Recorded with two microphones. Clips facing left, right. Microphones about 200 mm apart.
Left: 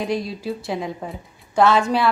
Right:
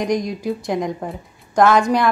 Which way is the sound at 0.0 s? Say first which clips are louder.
Right 4 dB; 15° right (ahead or behind).